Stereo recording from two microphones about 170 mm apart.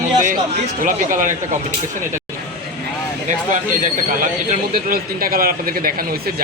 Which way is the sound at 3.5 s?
50° right (ahead or behind).